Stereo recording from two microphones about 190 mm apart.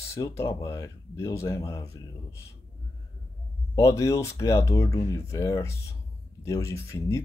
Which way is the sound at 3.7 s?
15° left (ahead or behind).